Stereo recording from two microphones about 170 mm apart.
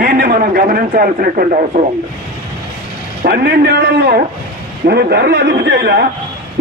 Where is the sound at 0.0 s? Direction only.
60° right (ahead or behind).